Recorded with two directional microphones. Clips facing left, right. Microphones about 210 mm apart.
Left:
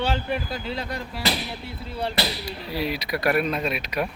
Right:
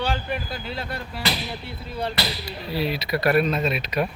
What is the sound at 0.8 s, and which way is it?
Speech, 15° left (ahead or behind).